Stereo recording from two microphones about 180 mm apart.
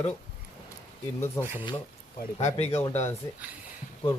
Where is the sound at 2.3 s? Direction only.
35° left (ahead or behind).